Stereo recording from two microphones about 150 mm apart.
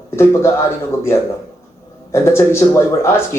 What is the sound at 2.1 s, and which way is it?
Speech, 15° left (ahead or behind).